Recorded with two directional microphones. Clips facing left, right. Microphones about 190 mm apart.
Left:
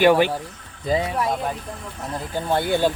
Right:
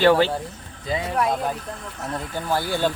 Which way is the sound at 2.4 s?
25° left (ahead or behind).